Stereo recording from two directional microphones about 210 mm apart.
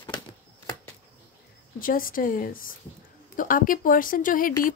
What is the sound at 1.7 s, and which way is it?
A woman's voice, 40° left (ahead or behind).